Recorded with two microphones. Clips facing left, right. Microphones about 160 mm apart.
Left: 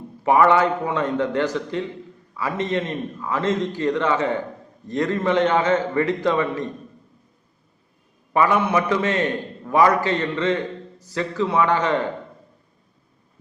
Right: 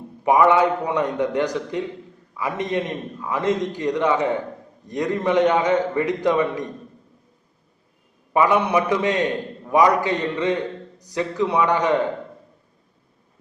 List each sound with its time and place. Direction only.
0.3 s a man's voice: 15° right (ahead or behind)
8.3 s a man's voice: 15° right (ahead or behind)